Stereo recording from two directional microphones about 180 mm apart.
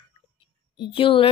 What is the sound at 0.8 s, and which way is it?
Speech, 30° left (ahead or behind).